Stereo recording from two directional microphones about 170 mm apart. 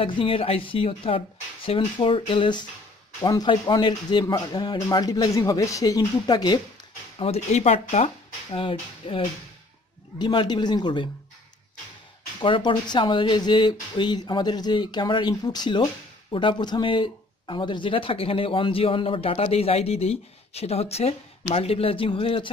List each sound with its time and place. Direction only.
0.0 s speech: 30° left (ahead or behind)
7.2 s speech: 40° left (ahead or behind)
12.4 s speech: 30° left (ahead or behind)